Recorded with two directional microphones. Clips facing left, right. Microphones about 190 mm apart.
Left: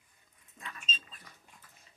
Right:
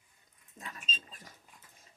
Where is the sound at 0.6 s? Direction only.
40° right (ahead or behind).